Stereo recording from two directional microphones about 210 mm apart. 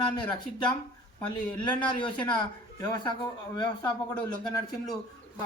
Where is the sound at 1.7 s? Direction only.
20° left (ahead or behind).